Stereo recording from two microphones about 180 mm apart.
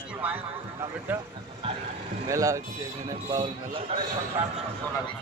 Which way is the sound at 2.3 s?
15° right (ahead or behind).